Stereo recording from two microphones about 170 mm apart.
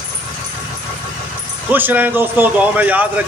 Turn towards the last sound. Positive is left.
turn(degrees=-10)  # may be behind; listen again after turning